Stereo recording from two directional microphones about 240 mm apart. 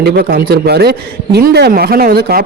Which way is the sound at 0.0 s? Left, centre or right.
Right.